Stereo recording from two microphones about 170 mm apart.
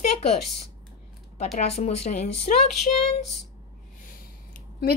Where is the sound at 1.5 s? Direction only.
40° left (ahead or behind).